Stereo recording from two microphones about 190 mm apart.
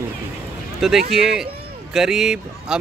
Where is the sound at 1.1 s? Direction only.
Centre (ahead or behind).